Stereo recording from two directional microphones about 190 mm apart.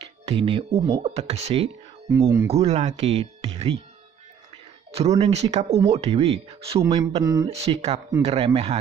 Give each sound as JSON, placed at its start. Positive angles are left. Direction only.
{"t": 0.0, "sound": "speech", "side_deg": -30}
{"t": 2.1, "sound": "speech", "side_deg": -15}
{"t": 2.5, "sound": "speech", "side_deg": -35}
{"t": 4.9, "sound": "speech", "side_deg": -35}
{"t": 7.4, "sound": "speech", "side_deg": -30}